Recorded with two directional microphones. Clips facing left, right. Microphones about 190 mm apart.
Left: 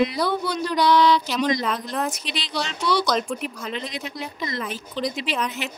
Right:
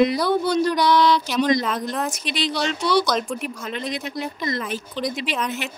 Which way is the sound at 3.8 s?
50° right (ahead or behind).